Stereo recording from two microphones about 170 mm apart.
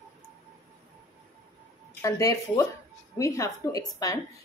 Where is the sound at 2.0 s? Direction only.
20° left (ahead or behind).